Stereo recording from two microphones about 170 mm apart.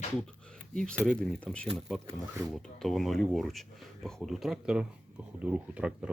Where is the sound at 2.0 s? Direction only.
20° right (ahead or behind).